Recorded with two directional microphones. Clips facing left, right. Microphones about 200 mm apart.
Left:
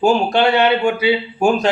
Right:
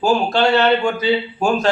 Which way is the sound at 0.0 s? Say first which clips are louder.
Left 2 dB; 15° left (ahead or behind).